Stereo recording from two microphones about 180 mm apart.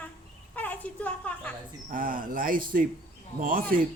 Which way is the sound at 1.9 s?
50° right (ahead or behind).